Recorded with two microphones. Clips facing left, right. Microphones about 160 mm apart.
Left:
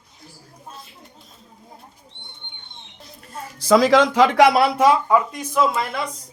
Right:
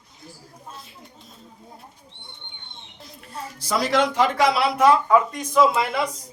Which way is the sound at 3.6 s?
90° left.